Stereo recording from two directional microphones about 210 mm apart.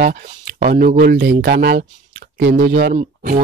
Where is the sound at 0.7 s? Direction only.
40° right (ahead or behind).